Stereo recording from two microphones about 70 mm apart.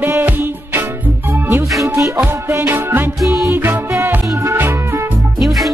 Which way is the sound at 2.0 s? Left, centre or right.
Right.